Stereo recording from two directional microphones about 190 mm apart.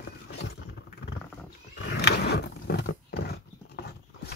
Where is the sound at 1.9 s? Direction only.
60° left (ahead or behind).